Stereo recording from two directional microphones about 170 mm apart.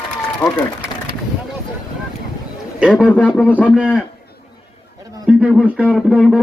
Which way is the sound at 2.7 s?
5° right (ahead or behind).